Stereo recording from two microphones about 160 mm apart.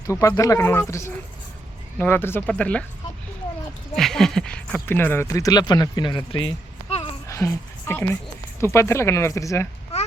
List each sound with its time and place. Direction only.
0.1 s speech: 20° left (ahead or behind)
3.9 s speech: centre (ahead or behind); by 6.5 s 30° left (ahead or behind)
7.3 s speech: 20° left (ahead or behind)